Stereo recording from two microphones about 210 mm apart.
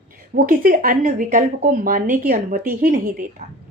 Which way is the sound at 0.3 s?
40° right (ahead or behind).